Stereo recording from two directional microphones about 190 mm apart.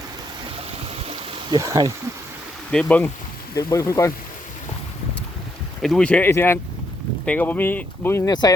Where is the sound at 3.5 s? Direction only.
15° left (ahead or behind).